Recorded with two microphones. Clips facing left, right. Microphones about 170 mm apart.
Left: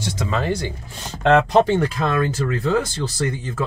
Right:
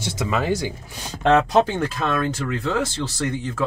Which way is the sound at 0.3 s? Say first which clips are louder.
Right 1 dB; 10° right (ahead or behind).